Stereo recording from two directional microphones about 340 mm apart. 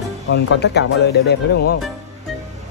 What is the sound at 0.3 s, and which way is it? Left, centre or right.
Speech, left.